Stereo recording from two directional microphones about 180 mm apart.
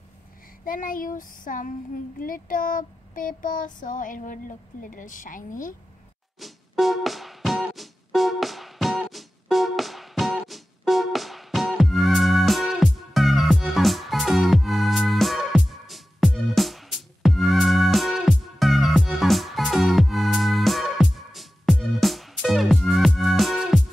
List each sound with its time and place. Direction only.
0.7 s child singing: 50° left (ahead or behind)
6.4 s music: centre (ahead or behind)